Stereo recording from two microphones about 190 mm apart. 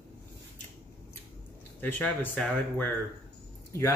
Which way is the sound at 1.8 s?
10° left (ahead or behind).